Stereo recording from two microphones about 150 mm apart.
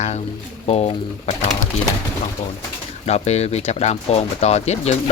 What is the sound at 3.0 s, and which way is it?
Speech, 45° left (ahead or behind).